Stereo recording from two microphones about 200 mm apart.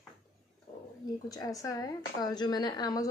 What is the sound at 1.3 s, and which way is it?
A woman's voice, 15° left (ahead or behind).